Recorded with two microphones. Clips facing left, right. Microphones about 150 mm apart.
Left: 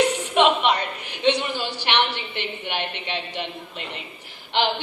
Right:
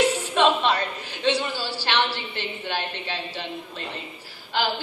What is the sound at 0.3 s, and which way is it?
A woman's voice, 20° left (ahead or behind).